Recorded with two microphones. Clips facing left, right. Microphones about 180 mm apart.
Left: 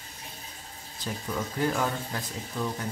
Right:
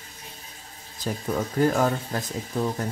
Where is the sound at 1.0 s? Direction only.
45° right (ahead or behind).